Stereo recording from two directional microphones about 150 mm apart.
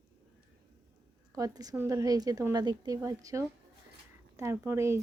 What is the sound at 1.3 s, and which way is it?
Speech, 25° right (ahead or behind).